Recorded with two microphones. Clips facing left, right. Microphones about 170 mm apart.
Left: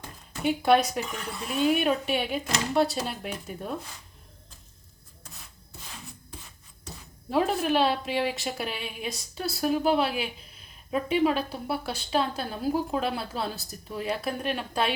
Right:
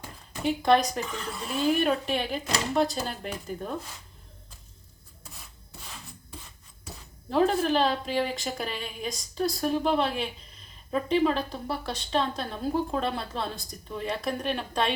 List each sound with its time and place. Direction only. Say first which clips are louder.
0.4 s speech: left 1 dB; 5° left (ahead or behind)
6.8 s a woman's voice: left 1 dB; 5° left (ahead or behind)